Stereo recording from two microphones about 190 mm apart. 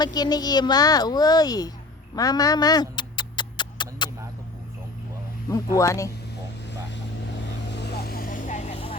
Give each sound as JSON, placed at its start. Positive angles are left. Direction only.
{"t": 0.0, "sound": "speech", "side_deg": 20}
{"t": 2.1, "sound": "a sound", "side_deg": 20}
{"t": 5.5, "sound": "speech", "side_deg": 15}
{"t": 7.8, "sound": "vehicle", "side_deg": 55}